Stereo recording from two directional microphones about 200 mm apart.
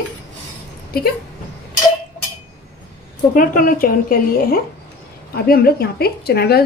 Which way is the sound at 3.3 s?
45° left (ahead or behind).